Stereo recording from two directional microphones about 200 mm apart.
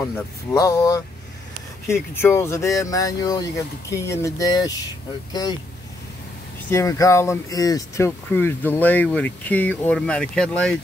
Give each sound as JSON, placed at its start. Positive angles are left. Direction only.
{"t": 0.0, "sound": "speech", "side_deg": 15}
{"t": 6.7, "sound": "speech", "side_deg": 15}